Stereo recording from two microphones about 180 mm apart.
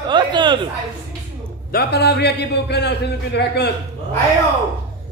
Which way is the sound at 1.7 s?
60° left (ahead or behind).